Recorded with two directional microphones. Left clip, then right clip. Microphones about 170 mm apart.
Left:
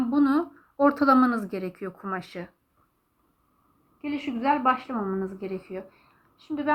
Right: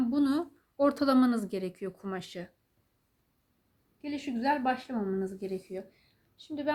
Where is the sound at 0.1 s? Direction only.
40° right (ahead or behind).